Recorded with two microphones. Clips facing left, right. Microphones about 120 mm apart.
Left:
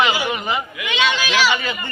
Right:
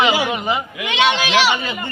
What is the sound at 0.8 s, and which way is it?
Speech, 70° right (ahead or behind).